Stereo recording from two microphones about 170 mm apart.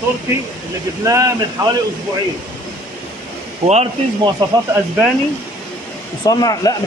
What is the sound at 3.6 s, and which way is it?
Speech, 40° right (ahead or behind).